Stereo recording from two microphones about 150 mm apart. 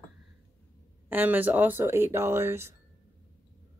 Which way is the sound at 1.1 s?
15° right (ahead or behind).